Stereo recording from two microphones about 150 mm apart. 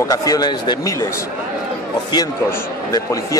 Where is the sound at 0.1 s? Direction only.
25° left (ahead or behind).